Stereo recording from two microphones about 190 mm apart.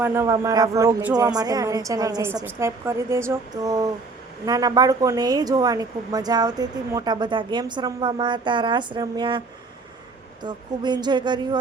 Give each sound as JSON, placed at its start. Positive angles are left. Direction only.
{"t": 0.0, "sound": "speech", "side_deg": -15}
{"t": 10.4, "sound": "speech", "side_deg": -20}